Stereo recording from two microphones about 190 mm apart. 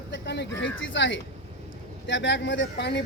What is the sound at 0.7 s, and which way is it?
A man's voice, 80° left.